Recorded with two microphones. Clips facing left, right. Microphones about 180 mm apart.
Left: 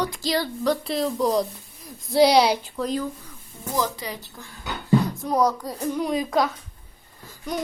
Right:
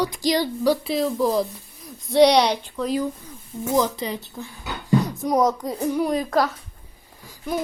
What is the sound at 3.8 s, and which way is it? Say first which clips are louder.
Speech: right 4 dB; 25° right (ahead or behind).